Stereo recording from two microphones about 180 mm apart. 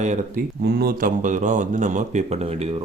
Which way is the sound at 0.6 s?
60° right (ahead or behind).